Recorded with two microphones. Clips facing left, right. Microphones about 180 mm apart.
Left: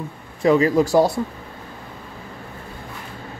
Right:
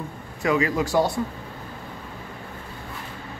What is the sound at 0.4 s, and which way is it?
Speech, 35° left (ahead or behind).